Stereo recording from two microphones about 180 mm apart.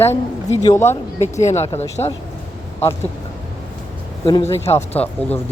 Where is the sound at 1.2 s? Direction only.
40° left (ahead or behind).